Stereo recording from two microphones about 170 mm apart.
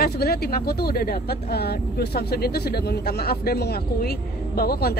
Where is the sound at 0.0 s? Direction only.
65° left (ahead or behind).